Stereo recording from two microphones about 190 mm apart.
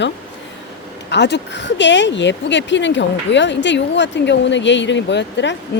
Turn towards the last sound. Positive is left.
turn(degrees=70)  # may be behind; listen again after turning